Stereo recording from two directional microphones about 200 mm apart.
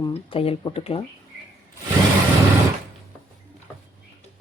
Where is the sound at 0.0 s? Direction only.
25° left (ahead or behind).